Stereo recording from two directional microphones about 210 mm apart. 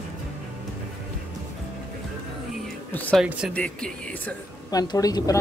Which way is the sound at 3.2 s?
5° right (ahead or behind).